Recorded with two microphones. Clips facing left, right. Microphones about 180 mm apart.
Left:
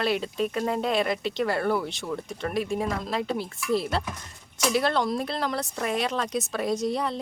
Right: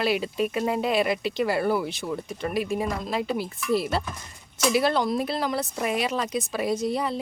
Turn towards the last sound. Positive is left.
turn(degrees=-5)  # may be behind; listen again after turning